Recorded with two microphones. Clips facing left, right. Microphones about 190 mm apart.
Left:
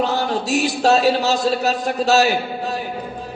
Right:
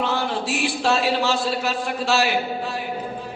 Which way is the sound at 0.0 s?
40° left (ahead or behind).